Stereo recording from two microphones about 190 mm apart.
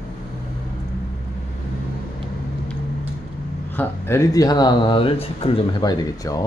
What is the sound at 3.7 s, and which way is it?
Speech, 10° left (ahead or behind).